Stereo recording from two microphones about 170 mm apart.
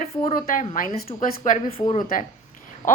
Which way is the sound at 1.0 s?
40° left (ahead or behind).